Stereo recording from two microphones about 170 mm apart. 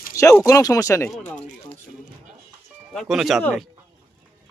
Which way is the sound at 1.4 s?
45° left (ahead or behind).